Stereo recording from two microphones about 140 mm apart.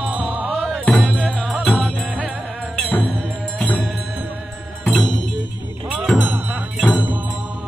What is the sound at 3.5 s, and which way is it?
Music, 10° left (ahead or behind).